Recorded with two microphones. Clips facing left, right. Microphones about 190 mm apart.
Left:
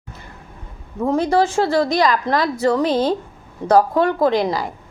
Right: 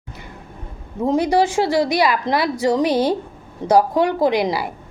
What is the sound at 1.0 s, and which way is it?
A woman's voice, 15° right (ahead or behind).